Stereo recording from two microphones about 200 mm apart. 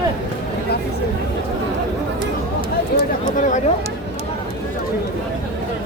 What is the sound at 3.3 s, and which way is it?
Speech, 40° left (ahead or behind).